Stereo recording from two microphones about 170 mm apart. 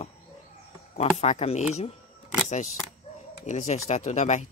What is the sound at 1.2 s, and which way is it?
Speech, 40° left (ahead or behind).